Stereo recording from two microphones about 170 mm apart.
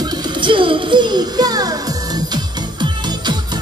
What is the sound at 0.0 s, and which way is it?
Music, 30° right (ahead or behind).